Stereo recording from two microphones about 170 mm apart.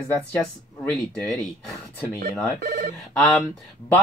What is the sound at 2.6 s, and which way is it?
Speech, 55° right (ahead or behind).